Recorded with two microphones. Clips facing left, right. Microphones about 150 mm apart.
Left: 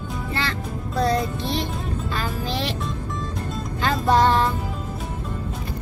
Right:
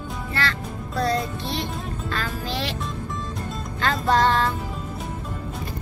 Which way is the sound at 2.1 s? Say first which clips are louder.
Left 1 dB; 15° left (ahead or behind).